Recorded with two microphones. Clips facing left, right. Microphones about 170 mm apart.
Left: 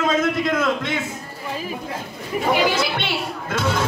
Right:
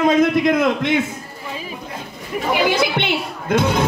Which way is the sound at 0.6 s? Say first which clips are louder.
Right 5 dB; 20° right (ahead or behind).